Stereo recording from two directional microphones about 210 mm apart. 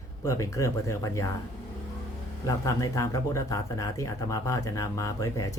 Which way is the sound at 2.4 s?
15° left (ahead or behind).